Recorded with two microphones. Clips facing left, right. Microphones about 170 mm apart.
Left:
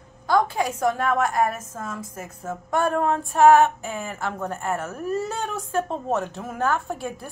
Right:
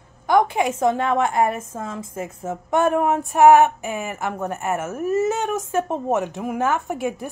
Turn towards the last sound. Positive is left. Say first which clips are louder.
# right 5 dB
turn(degrees=-15)  # may be behind; listen again after turning